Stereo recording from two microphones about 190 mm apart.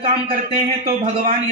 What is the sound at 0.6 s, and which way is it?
Speech, 40° right (ahead or behind).